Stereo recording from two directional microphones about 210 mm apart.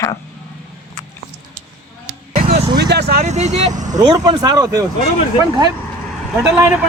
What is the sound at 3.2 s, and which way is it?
Speech, 35° right (ahead or behind).